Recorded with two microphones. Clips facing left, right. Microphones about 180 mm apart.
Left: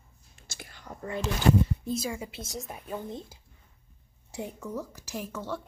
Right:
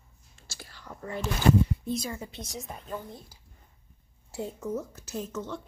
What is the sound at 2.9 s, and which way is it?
Speech, 20° left (ahead or behind).